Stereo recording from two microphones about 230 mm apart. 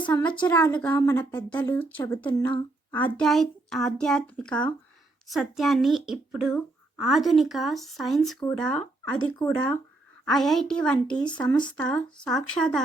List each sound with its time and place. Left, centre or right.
0.0 s speech: centre
2.2 s speech: left
2.9 s speech: centre